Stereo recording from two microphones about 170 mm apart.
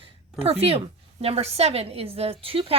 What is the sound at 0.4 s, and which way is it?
A woman's voice, 35° right (ahead or behind).